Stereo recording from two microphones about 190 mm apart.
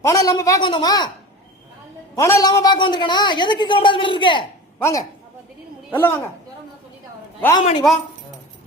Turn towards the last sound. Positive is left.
turn(degrees=0)  # may be behind; listen again after turning